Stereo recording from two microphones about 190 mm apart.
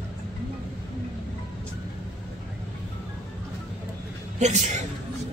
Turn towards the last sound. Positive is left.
turn(degrees=-40)  # may be behind; listen again after turning